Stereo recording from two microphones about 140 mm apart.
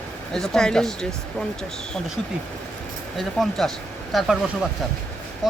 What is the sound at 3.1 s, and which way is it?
Speech, centre (ahead or behind).